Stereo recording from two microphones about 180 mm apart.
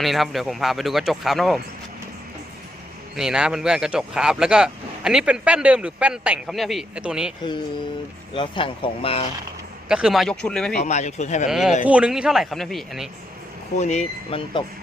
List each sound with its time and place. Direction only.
0.0 s speech: centre (ahead or behind)
3.2 s speech: 5° right (ahead or behind)
8.3 s speech: 30° left (ahead or behind)
9.9 s speech: 5° right (ahead or behind)
10.8 s speech: 40° left (ahead or behind)
11.4 s speech: centre (ahead or behind)
13.7 s speech: 40° left (ahead or behind)